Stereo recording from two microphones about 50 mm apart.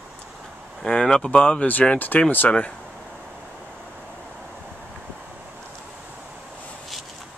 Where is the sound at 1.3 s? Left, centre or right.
Left.